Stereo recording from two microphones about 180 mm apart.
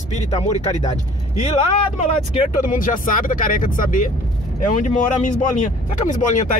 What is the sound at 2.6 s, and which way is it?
Speech, 45° left (ahead or behind).